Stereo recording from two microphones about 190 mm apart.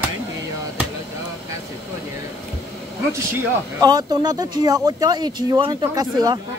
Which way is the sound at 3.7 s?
20° right (ahead or behind).